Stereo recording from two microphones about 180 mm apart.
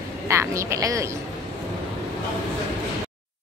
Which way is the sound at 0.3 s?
15° right (ahead or behind).